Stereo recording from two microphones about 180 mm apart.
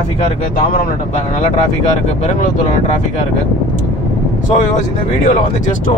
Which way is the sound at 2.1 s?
40° left (ahead or behind).